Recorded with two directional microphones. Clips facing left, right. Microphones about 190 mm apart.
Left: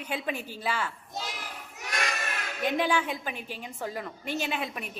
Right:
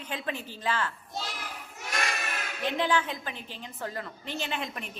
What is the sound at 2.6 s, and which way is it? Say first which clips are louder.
A woman's voice: left 1 dB; 10° left (ahead or behind).